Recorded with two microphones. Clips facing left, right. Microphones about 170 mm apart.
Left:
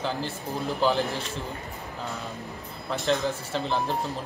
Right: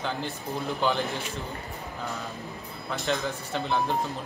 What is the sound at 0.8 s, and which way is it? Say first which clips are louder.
Speech: left 3 dB; centre (ahead or behind).